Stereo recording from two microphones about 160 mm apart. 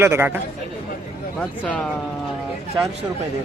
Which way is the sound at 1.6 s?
10° left (ahead or behind).